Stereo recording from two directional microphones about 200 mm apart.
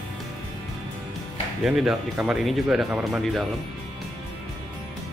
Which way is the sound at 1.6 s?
Centre (ahead or behind).